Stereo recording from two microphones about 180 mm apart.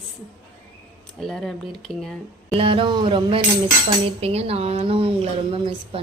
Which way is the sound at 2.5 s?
30° right (ahead or behind).